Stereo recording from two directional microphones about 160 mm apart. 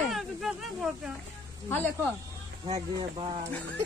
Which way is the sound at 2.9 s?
35° right (ahead or behind).